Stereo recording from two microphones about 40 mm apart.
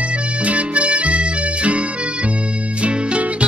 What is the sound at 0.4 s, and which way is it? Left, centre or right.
Music, right.